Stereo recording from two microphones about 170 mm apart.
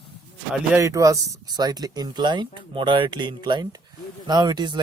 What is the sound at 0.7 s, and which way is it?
Speech, 20° right (ahead or behind).